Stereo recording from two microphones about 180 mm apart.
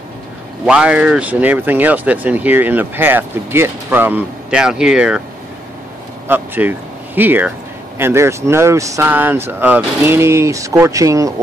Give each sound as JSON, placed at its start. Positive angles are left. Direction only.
{"t": 0.7, "sound": "speech", "side_deg": -5}
{"t": 6.2, "sound": "speech", "side_deg": -10}